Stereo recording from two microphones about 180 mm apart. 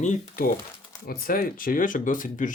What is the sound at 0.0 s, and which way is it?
Speech, 40° left (ahead or behind).